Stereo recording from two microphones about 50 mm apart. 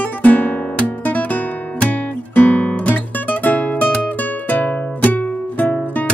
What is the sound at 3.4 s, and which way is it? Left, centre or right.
Music, left.